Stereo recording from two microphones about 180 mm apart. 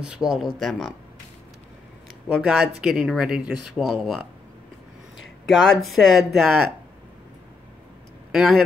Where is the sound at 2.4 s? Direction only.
5° right (ahead or behind).